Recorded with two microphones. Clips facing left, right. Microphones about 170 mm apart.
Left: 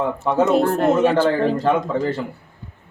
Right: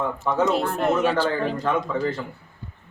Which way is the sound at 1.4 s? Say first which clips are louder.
Left 6 dB; 30° left (ahead or behind).